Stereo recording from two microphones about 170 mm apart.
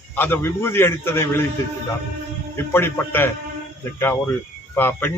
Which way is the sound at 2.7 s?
15° left (ahead or behind).